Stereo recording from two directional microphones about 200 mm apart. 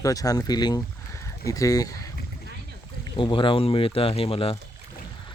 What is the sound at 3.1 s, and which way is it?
Speech, 25° left (ahead or behind).